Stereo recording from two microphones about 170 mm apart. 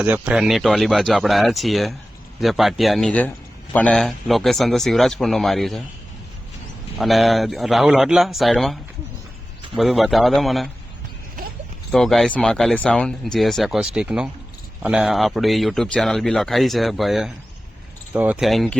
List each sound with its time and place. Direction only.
0.0 s a man's voice: 10° right (ahead or behind)
7.0 s a man's voice: centre (ahead or behind)
11.9 s a man's voice: centre (ahead or behind)